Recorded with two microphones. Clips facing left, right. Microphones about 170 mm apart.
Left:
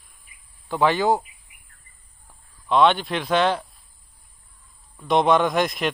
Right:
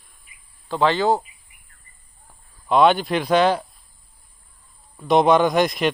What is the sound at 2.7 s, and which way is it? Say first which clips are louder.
A man's voice: right 2 dB; 5° right (ahead or behind).